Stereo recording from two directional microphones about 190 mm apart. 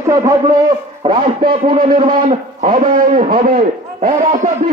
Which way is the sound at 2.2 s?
40° right (ahead or behind).